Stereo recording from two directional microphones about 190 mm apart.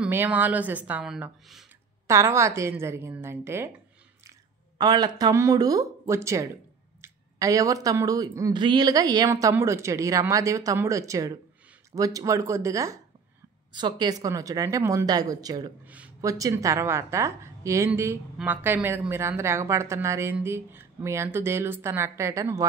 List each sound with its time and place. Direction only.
0.0 s a woman's voice: 10° right (ahead or behind)
2.0 s a woman's voice: 15° right (ahead or behind)
4.7 s a woman's voice: 20° right (ahead or behind)